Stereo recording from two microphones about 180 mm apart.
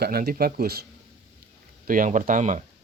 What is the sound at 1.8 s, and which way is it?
Speech, 45° right (ahead or behind).